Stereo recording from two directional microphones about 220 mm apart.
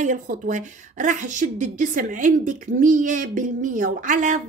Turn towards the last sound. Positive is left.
turn(degrees=-35)  # may be behind; listen again after turning